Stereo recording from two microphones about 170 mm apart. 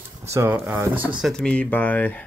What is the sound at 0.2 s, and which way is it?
Speech, 15° right (ahead or behind).